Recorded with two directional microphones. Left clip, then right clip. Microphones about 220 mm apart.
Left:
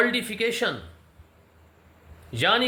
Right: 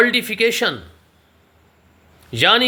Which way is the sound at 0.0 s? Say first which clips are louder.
Right 8 dB; 45° right (ahead or behind).